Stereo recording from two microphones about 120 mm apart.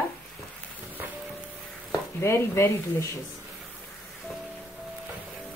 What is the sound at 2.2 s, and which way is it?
Speech, 20° left (ahead or behind).